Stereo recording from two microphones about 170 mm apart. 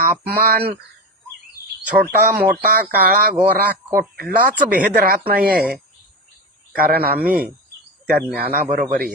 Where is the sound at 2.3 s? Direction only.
60° right (ahead or behind).